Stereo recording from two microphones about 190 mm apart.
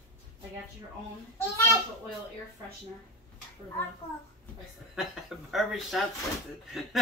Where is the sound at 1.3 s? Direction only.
15° left (ahead or behind).